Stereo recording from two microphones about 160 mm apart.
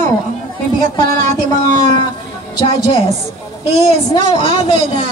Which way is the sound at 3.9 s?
45° right (ahead or behind).